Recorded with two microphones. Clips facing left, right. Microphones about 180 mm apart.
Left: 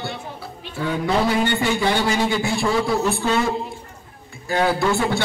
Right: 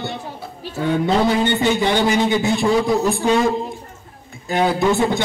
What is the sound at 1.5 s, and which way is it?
A man's voice, 20° right (ahead or behind).